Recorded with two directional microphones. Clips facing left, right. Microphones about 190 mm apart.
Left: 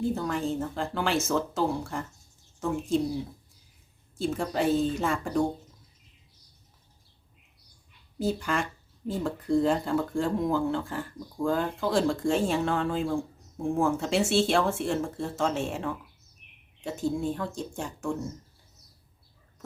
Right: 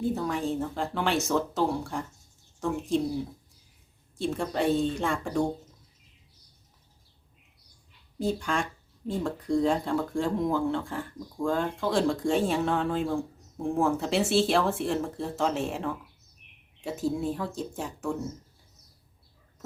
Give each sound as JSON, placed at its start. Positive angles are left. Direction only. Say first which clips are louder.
{"t": 0.0, "sound": "speech", "louder": "even", "side_deg": 0}
{"t": 4.2, "sound": "speech", "louder": "even", "side_deg": 0}
{"t": 8.2, "sound": "speech", "louder": "even", "side_deg": 5}